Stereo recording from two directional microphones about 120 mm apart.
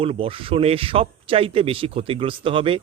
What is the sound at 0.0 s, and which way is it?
Speech, 50° right (ahead or behind).